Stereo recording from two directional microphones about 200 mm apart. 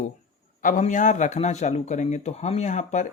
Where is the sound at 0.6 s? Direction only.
40° left (ahead or behind).